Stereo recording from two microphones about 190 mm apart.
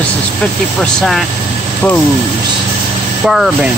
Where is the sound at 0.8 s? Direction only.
Centre (ahead or behind).